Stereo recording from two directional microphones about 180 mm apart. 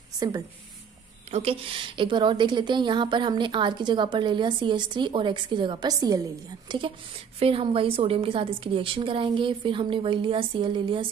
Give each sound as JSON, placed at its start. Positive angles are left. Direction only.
{"t": 1.3, "sound": "a woman's voice", "side_deg": -30}